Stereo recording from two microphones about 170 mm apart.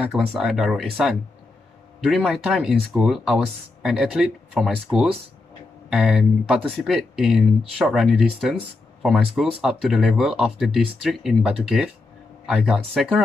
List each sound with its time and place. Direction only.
0.1 s speech: centre (ahead or behind)
2.0 s speech: centre (ahead or behind)
5.9 s speech: 5° right (ahead or behind)